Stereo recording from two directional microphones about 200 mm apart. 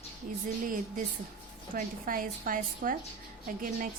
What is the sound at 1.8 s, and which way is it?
A woman's voice, 45° right (ahead or behind).